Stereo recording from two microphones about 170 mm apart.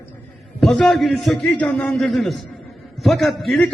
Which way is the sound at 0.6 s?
5° left (ahead or behind).